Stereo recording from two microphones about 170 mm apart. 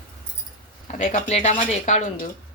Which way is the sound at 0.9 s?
45° left (ahead or behind).